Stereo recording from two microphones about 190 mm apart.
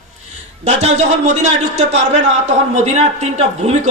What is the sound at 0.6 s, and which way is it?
A man's voice, 35° right (ahead or behind).